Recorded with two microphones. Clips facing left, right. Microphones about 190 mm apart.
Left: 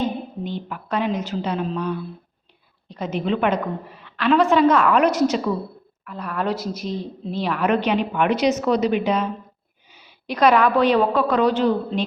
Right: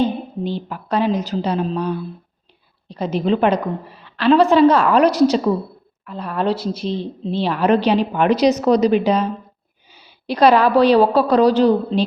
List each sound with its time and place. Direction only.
0.0 s speech: 30° right (ahead or behind)